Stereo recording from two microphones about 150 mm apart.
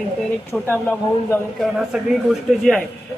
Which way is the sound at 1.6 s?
5° right (ahead or behind).